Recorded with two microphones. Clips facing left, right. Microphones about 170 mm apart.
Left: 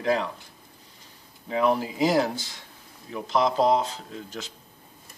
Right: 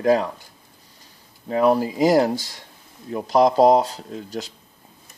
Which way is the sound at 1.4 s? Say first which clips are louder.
Right 5 dB; 40° right (ahead or behind).